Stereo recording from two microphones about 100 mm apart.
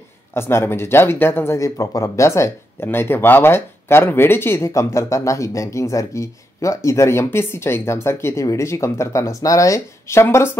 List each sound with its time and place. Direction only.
0.3 s speech: 25° left (ahead or behind)